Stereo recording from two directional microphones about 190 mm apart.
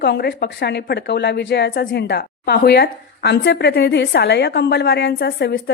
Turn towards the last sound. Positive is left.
turn(degrees=55)  # may be behind; listen again after turning